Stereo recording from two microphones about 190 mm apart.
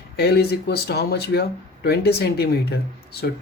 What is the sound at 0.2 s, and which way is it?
Speech, 60° left (ahead or behind).